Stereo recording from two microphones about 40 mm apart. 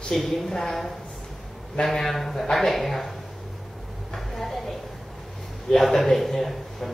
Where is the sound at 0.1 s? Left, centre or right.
Centre.